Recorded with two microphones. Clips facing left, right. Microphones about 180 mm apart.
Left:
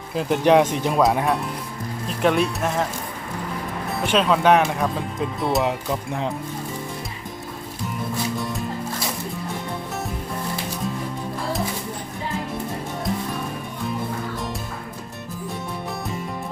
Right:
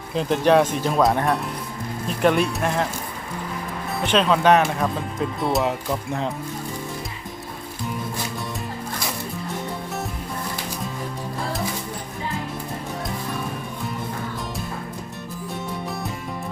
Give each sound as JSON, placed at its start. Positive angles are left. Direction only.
{"t": 0.2, "sound": "speech", "side_deg": 15}
{"t": 0.9, "sound": "speech", "side_deg": 5}
{"t": 3.9, "sound": "speech", "side_deg": 5}
{"t": 5.6, "sound": "speech", "side_deg": 15}